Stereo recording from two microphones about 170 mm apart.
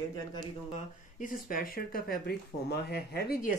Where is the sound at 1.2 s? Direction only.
60° left (ahead or behind).